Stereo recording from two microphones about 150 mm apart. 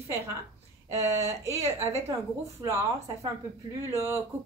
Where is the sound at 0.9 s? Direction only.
20° right (ahead or behind).